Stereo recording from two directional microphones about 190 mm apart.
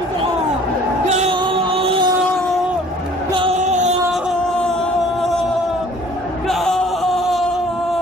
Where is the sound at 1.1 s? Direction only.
35° right (ahead or behind).